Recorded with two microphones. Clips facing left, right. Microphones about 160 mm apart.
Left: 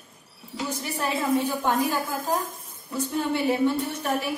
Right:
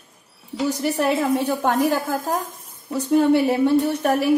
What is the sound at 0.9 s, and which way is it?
Speech, 70° right (ahead or behind).